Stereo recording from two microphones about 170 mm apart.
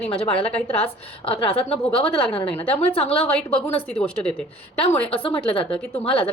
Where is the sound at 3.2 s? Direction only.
5° left (ahead or behind).